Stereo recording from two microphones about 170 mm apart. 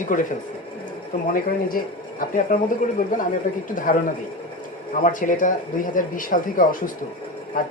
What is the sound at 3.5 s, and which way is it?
Speech, 55° left (ahead or behind).